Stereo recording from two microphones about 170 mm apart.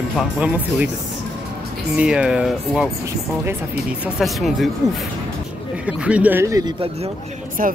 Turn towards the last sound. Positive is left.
turn(degrees=-50)  # may be behind; listen again after turning